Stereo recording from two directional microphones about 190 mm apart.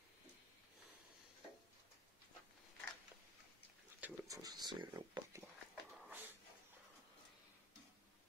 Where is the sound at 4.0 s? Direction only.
15° right (ahead or behind).